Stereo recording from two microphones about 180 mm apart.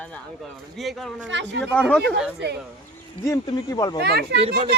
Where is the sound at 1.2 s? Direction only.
80° right.